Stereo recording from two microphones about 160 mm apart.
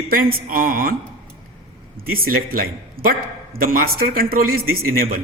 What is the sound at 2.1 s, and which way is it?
A man's voice, 65° right (ahead or behind).